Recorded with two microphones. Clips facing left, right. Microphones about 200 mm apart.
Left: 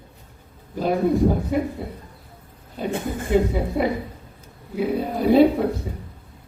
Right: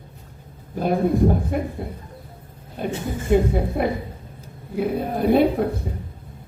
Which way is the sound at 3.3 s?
55° right (ahead or behind).